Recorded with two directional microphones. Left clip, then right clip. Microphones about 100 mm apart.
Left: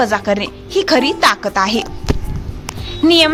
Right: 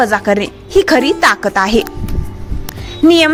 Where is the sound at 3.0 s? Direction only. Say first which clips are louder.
Right 2 dB; 50° right (ahead or behind).